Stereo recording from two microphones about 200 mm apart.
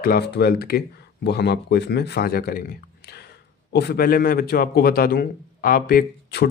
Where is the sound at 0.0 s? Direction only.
50° left (ahead or behind).